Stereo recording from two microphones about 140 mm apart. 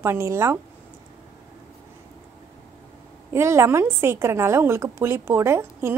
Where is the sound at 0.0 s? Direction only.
20° right (ahead or behind).